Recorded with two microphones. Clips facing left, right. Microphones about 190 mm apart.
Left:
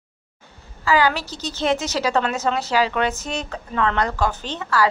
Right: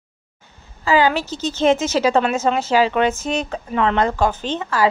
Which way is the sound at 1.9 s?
15° right (ahead or behind).